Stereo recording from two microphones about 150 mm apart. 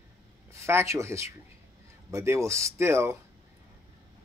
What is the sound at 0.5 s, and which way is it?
Speech, 15° right (ahead or behind).